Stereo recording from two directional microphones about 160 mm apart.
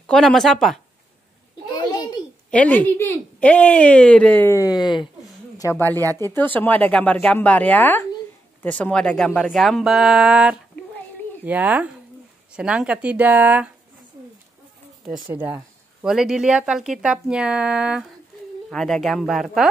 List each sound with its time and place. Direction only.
0.0 s speech: 5° left (ahead or behind)
1.8 s a sound: 25° left (ahead or behind)
2.5 s a woman's voice: 10° left (ahead or behind); by 5.1 s 30° left (ahead or behind)
5.6 s a woman's voice: 15° left (ahead or behind); by 13.7 s 10° right (ahead or behind)
15.3 s speech: 10° right (ahead or behind)